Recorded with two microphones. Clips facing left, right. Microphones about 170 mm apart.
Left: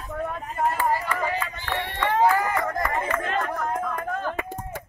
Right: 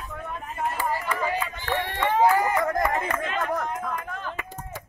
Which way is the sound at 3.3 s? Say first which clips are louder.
Left 1 dB; 45° left (ahead or behind).